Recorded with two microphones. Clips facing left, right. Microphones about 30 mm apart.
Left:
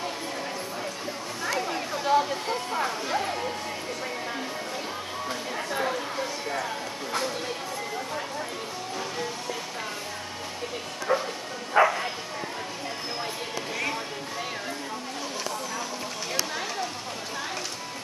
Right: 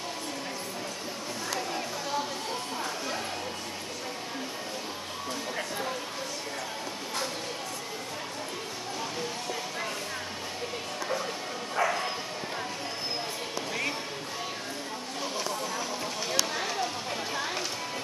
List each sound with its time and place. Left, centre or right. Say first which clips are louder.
2.0 s speech: left 12 dB; left
5.8 s speech: left 5 dB; left
11.1 s speech: left 7 dB; centre
11.7 s speech: left 8 dB; left
16.5 s speech: even; centre